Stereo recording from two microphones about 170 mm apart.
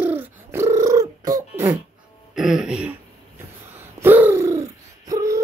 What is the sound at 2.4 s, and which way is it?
Throat clearing, centre (ahead or behind).